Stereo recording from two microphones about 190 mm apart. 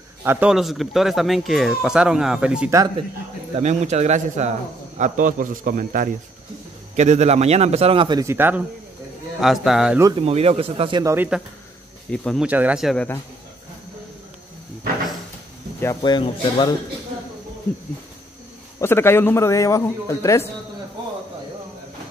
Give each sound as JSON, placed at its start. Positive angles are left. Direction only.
{"t": 0.2, "sound": "speech", "side_deg": -10}
{"t": 3.5, "sound": "speech", "side_deg": -35}
{"t": 10.1, "sound": "speech", "side_deg": -30}
{"t": 11.1, "sound": "speech", "side_deg": -5}
{"t": 12.4, "sound": "speech", "side_deg": -5}
{"t": 15.8, "sound": "speech", "side_deg": 20}
{"t": 18.8, "sound": "a man's voice", "side_deg": 10}